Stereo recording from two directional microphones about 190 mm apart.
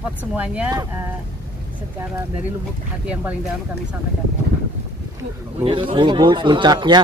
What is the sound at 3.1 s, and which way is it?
Speech, 5° right (ahead or behind).